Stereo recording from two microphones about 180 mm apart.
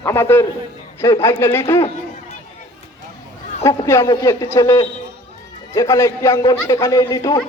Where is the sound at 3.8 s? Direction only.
15° left (ahead or behind).